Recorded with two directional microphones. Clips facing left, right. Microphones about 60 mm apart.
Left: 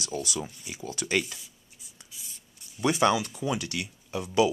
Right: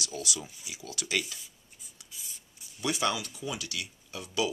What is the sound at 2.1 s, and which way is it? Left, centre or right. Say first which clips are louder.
Writing: right 1 dB; centre.